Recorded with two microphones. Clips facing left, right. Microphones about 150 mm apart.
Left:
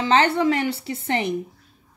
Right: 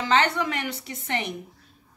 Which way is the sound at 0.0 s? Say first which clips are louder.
Left 5 dB; 30° left (ahead or behind).